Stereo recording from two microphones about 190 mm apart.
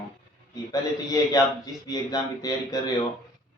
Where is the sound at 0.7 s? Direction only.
20° left (ahead or behind).